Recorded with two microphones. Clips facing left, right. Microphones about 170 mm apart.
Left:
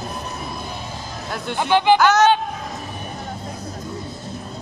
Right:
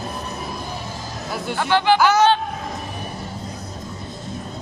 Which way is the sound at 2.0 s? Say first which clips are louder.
Left 1 dB; 10° right (ahead or behind).